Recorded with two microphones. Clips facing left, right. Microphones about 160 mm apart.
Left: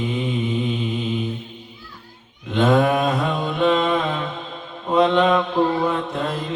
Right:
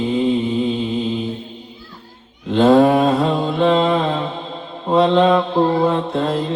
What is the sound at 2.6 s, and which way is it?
Mantra, 35° right (ahead or behind).